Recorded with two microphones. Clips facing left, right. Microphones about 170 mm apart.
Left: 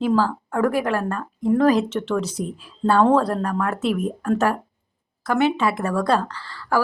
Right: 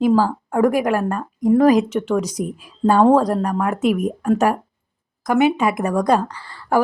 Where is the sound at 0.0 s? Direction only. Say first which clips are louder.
Right 4 dB; 10° right (ahead or behind).